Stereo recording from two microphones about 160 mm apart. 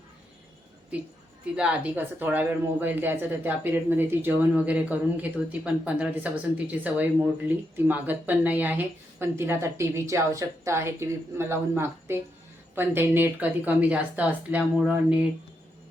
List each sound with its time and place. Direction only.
1.5 s speech: 10° right (ahead or behind)